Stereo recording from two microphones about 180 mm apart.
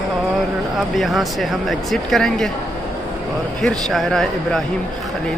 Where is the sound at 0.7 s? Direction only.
Centre (ahead or behind).